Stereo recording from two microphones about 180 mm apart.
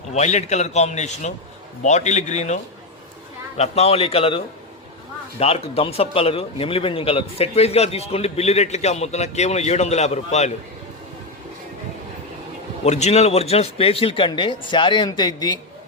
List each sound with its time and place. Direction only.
0.1 s a man's voice: 40° left (ahead or behind)
3.6 s a man's voice: 35° left (ahead or behind)
12.8 s a man's voice: 40° left (ahead or behind); by 15.5 s 25° left (ahead or behind)